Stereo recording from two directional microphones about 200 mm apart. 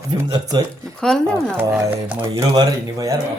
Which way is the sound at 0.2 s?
20° right (ahead or behind).